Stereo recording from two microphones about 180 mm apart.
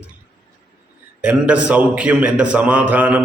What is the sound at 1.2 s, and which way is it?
A man's voice, 5° right (ahead or behind).